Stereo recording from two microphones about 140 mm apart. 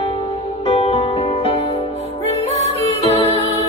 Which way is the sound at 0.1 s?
45° left (ahead or behind).